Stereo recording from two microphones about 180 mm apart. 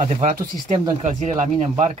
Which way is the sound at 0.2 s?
40° right (ahead or behind).